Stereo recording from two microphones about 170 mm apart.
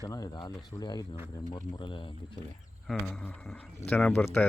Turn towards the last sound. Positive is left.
turn(degrees=10)  # may be behind; listen again after turning